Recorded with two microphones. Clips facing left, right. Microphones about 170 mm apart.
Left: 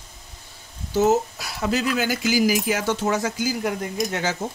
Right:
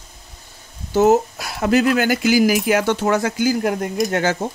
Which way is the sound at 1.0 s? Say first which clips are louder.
Right 5 dB; 55° right (ahead or behind).